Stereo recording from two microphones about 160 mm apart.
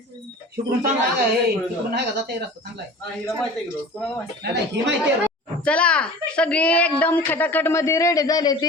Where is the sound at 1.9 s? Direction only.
90° right.